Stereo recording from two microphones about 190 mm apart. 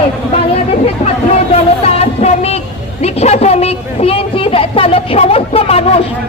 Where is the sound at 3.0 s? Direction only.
35° left (ahead or behind).